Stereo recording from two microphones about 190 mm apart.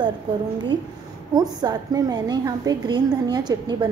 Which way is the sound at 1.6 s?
20° right (ahead or behind).